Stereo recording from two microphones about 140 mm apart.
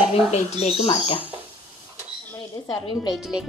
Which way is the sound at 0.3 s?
50° left (ahead or behind).